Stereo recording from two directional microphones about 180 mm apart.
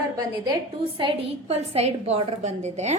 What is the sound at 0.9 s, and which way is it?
A woman's voice, 30° right (ahead or behind).